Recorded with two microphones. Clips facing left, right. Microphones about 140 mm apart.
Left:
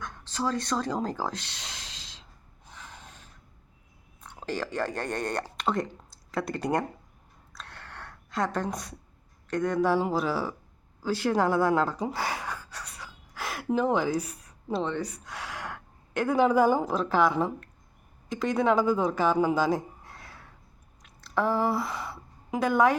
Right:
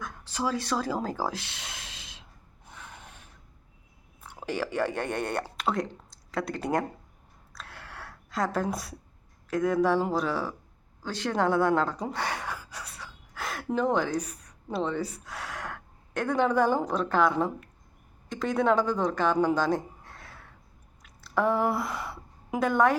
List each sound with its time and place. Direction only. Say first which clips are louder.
0.0 s speech: even; 5° right (ahead or behind)
1.9 s snort: right 1 dB; 60° right (ahead or behind)
2.6 s a sound: even; 5° right (ahead or behind)
4.2 s speech: right 1 dB; 10° right (ahead or behind)
7.5 s a sound: even; 5° right (ahead or behind)
9.5 s speech: right 1 dB; 5° right (ahead or behind)
11.0 s gasp: left 2 dB; 5° left (ahead or behind)
14.7 s a woman's voice: even; 5° right (ahead or behind)
21.0 s a sound: right 1 dB; centre (ahead or behind)